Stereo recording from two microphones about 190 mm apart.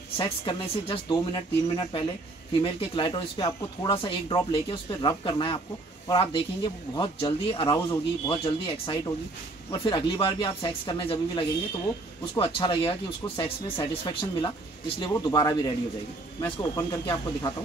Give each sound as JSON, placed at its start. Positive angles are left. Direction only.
{"t": 0.2, "sound": "speech", "side_deg": 30}